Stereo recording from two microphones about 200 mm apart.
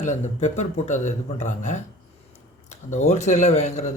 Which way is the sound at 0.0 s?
35° left (ahead or behind).